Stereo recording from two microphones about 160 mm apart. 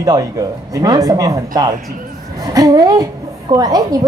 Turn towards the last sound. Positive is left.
turn(degrees=-25)  # may be behind; listen again after turning